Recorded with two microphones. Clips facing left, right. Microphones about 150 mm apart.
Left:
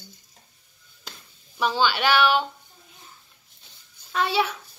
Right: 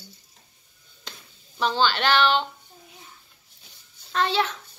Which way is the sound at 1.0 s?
10° left (ahead or behind).